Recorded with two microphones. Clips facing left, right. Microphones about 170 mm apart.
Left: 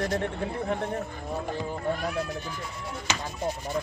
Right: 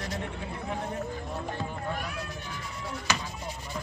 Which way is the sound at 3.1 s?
20° left (ahead or behind).